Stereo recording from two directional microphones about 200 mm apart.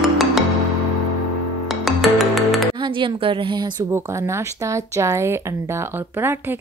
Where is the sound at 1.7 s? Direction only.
Centre (ahead or behind).